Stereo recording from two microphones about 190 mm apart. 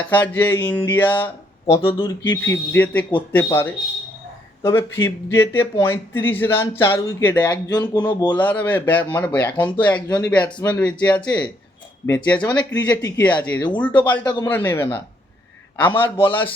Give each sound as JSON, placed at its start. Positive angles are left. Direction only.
{"t": 0.0, "sound": "speech", "side_deg": 10}
{"t": 7.7, "sound": "speech", "side_deg": 20}
{"t": 8.3, "sound": "speech", "side_deg": 10}
{"t": 14.1, "sound": "speech", "side_deg": 20}